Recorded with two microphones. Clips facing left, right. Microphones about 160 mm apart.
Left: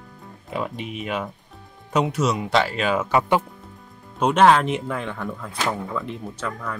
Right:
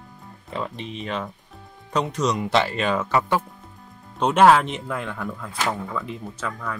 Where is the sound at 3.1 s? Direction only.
15° left (ahead or behind).